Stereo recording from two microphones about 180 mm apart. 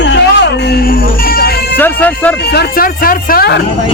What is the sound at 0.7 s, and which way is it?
Music, 55° left (ahead or behind).